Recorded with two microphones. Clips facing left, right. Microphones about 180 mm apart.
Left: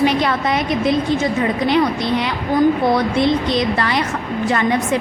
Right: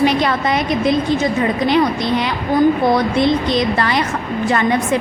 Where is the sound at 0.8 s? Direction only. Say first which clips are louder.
Right 1 dB; 90° right.